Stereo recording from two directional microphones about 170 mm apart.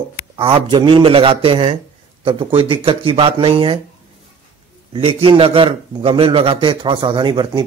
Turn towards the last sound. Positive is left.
turn(degrees=-25)  # may be behind; listen again after turning